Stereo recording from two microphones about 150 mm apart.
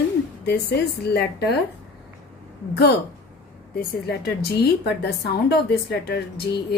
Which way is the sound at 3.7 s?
90° left.